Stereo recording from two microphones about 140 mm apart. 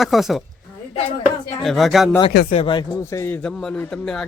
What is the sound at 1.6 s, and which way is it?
Speech, centre (ahead or behind).